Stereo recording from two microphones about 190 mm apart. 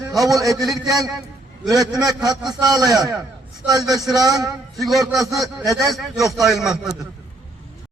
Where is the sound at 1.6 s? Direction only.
20° right (ahead or behind).